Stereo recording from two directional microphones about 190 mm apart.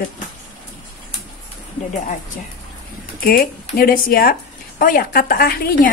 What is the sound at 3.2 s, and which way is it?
A woman's voice, 50° left (ahead or behind).